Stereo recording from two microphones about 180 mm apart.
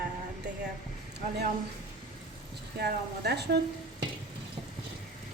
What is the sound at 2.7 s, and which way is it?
Speech, 65° right (ahead or behind).